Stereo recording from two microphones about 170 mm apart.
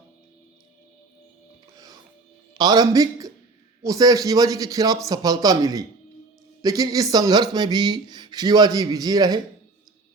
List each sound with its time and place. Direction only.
1.7 s music: 25° right (ahead or behind)
2.6 s speech: 25° right (ahead or behind)